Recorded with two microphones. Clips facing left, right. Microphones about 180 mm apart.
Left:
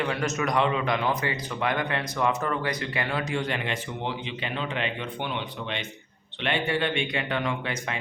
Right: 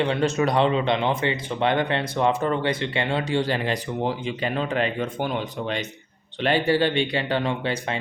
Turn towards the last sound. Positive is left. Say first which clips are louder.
# right 4 dB
turn(degrees=-30)  # may be behind; listen again after turning